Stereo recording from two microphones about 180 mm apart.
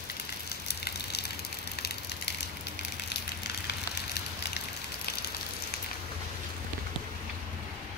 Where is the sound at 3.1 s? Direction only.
70° left (ahead or behind).